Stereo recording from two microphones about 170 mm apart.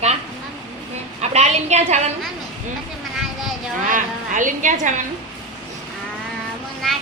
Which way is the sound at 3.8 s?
50° right (ahead or behind).